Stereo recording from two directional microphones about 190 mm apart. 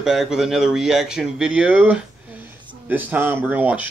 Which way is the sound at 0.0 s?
Centre (ahead or behind).